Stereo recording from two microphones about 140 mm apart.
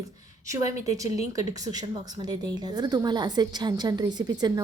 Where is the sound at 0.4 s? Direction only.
20° right (ahead or behind).